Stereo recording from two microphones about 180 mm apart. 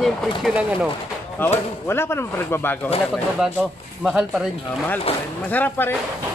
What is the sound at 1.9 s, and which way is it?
Speech, 15° left (ahead or behind).